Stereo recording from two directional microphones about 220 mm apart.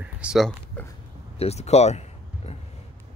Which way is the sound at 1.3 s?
30° left (ahead or behind).